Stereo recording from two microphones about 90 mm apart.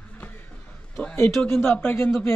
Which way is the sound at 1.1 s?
25° left (ahead or behind).